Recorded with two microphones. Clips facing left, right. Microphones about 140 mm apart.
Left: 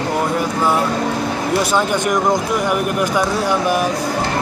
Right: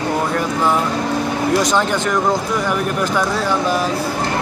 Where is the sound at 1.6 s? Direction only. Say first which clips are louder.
Even; 10° left (ahead or behind).